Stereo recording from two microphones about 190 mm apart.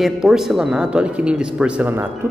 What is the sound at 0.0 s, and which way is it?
Speech, centre (ahead or behind).